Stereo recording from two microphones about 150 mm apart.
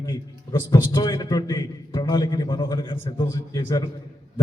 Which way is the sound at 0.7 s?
30° left (ahead or behind).